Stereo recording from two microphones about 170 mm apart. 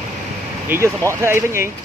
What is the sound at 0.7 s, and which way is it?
Speech, 15° right (ahead or behind).